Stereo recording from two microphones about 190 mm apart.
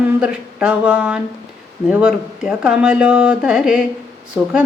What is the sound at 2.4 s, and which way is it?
A woman's voice, 5° right (ahead or behind).